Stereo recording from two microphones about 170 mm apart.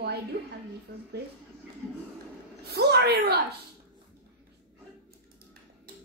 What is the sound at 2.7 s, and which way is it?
Speech, 70° right (ahead or behind).